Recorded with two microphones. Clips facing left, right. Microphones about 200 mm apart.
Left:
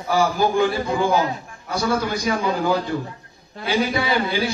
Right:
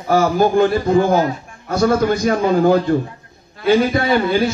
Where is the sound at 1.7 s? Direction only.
50° right (ahead or behind).